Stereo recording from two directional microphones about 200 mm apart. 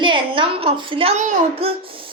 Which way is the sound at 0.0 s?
25° right (ahead or behind).